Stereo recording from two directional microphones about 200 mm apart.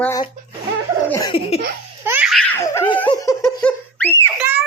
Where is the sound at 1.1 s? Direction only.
20° left (ahead or behind).